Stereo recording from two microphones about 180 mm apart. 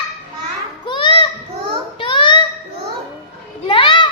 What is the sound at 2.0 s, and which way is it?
Child singing, 30° left (ahead or behind).